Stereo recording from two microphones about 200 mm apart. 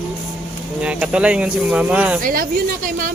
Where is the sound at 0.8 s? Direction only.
5° right (ahead or behind).